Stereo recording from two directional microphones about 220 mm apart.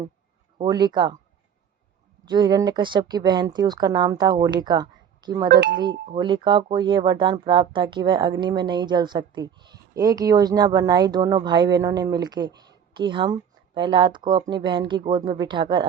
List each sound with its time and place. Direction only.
0.6 s speech: 20° right (ahead or behind)
2.2 s speech: 20° right (ahead or behind)
5.5 s speech: 50° right (ahead or behind)
6.1 s speech: 20° right (ahead or behind)